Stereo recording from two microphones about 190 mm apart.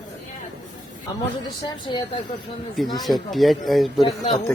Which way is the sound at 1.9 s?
25° left (ahead or behind).